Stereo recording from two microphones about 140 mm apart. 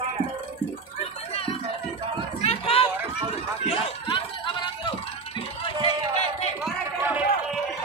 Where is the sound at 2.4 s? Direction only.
45° left (ahead or behind).